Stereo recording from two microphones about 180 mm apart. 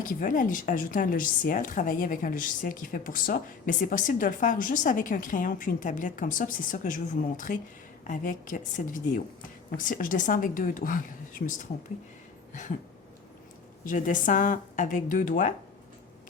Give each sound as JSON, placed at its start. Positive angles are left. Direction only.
{"t": 0.0, "sound": "speech", "side_deg": 50}
{"t": 13.8, "sound": "speech", "side_deg": 45}